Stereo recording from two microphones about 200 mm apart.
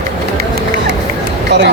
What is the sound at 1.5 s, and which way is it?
Speech, 55° right (ahead or behind).